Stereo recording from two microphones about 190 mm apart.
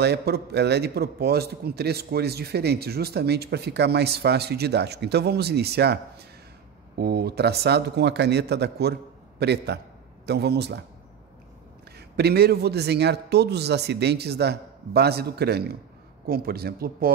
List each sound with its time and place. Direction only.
0.0 s a man's voice: 60° right (ahead or behind)
12.2 s a man's voice: 55° right (ahead or behind)